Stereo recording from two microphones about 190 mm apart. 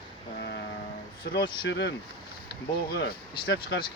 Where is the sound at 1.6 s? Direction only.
65° left (ahead or behind).